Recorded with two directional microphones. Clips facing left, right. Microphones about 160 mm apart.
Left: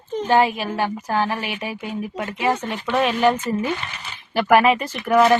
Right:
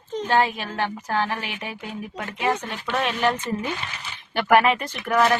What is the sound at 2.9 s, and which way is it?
Speech, 5° left (ahead or behind).